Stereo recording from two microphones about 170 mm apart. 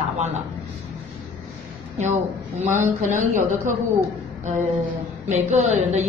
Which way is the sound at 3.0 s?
50° right (ahead or behind).